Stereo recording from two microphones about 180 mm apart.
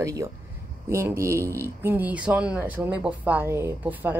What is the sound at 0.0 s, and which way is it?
Speech, 20° right (ahead or behind).